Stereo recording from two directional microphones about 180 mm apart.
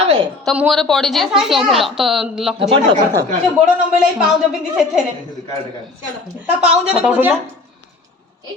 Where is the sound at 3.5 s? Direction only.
5° right (ahead or behind).